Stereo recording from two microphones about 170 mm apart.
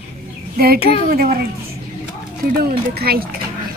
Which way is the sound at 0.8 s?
35° left (ahead or behind).